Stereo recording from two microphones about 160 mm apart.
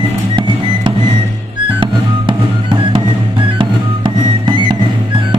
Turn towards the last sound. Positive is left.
turn(degrees=-30)  # may be behind; listen again after turning